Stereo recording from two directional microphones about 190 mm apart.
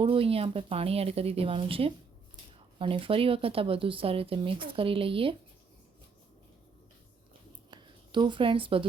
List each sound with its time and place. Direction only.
0.0 s speech: 30° right (ahead or behind)
7.7 s speech: 25° right (ahead or behind)